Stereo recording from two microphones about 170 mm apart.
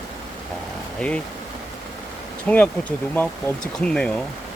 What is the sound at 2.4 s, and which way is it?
Speech, 10° left (ahead or behind).